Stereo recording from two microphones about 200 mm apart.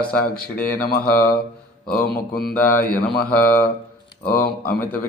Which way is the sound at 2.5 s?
10° left (ahead or behind).